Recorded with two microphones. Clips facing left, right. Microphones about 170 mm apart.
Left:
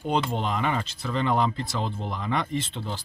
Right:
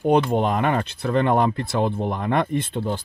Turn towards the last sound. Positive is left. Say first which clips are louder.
# right 6 dB
turn(degrees=-50)  # may be behind; listen again after turning